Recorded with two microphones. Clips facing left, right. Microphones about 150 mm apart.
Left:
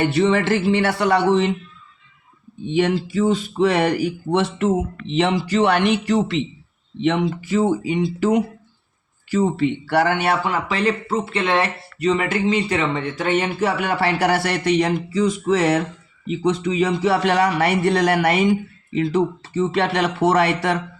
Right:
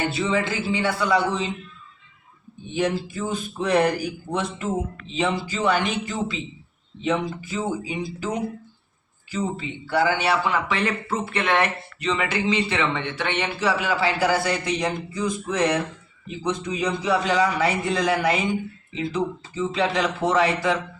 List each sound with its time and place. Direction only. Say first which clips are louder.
0.2 s speech: left 7 dB; 70° left (ahead or behind)
2.6 s speech: left 5 dB; 90° left
9.3 s speech: left 9 dB; 75° left (ahead or behind)
10.5 s speech: left 3 dB; 35° left (ahead or behind)
11.9 s speech: left 6 dB; 40° left (ahead or behind); by 15.8 s 90° left
16.2 s speech: left 7 dB; 80° left